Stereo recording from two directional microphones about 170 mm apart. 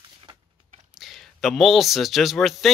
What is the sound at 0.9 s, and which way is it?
Speech, centre (ahead or behind).